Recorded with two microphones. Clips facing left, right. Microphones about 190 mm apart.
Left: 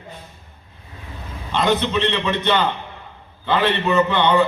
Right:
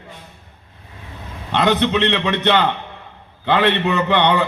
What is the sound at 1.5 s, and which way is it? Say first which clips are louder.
A man's voice: right 2 dB; 70° right (ahead or behind).